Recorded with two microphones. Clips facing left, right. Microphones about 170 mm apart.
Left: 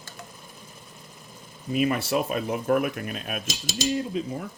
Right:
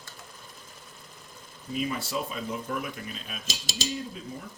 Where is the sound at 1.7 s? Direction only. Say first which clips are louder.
Left 7 dB; 70° left (ahead or behind).